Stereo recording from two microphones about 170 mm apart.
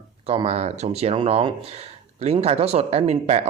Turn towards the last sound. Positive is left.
turn(degrees=-40)  # may be behind; listen again after turning